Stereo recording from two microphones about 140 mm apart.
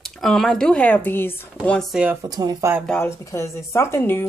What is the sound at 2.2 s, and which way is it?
Speech, 25° right (ahead or behind).